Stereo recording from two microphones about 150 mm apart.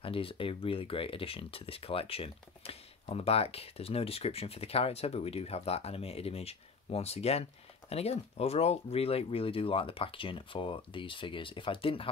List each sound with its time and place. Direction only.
0.0 s speech: 35° left (ahead or behind)